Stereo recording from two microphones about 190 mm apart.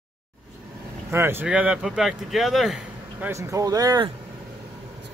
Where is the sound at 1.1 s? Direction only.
10° right (ahead or behind).